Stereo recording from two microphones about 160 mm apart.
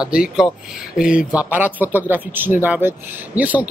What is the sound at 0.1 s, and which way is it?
Speech, 5° right (ahead or behind).